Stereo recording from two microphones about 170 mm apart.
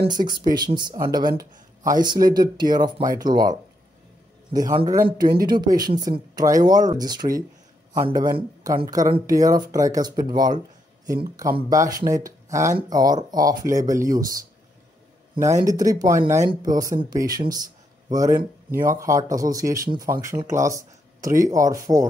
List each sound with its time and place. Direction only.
0.0 s speech: 25° right (ahead or behind)
11.7 s speech: 20° right (ahead or behind)
15.4 s speech: 20° right (ahead or behind)